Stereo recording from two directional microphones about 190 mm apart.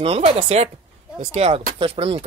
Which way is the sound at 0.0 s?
30° right (ahead or behind).